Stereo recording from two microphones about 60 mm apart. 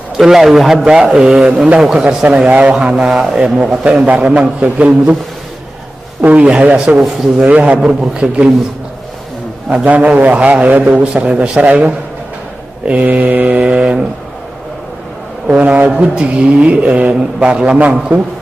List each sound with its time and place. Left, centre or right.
0.2 s a man's voice: centre
4.3 s mantra: right
6.4 s mantra: centre
7.0 s a man's voice: centre
7.3 s a man's voice: centre
9.8 s mantra: right
12.8 s mantra: right
15.5 s mantra: right